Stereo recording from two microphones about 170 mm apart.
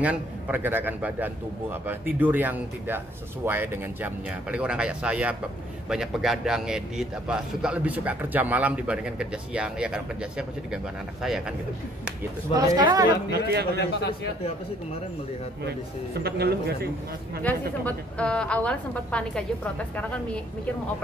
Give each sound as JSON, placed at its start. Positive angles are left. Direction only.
{"t": 0.0, "sound": "a man's voice", "side_deg": -10}
{"t": 12.5, "sound": "speech", "side_deg": -20}
{"t": 13.3, "sound": "speech", "side_deg": -70}
{"t": 13.7, "sound": "a man's voice", "side_deg": 75}
{"t": 16.2, "sound": "speech", "side_deg": -70}
{"t": 17.5, "sound": "a woman's voice", "side_deg": 10}